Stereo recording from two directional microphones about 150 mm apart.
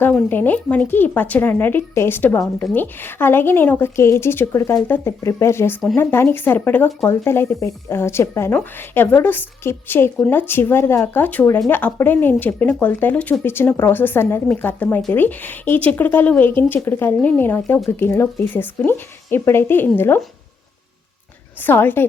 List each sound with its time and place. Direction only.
0.0 s a woman's voice: 15° left (ahead or behind)
21.6 s a woman's voice: 15° left (ahead or behind)